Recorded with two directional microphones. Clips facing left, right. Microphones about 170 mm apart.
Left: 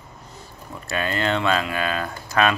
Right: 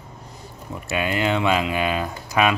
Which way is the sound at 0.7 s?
15° right (ahead or behind).